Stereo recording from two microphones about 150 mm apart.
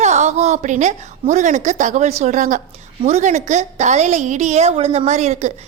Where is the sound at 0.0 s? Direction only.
50° right (ahead or behind).